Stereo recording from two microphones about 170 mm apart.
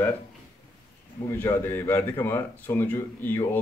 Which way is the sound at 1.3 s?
15° left (ahead or behind).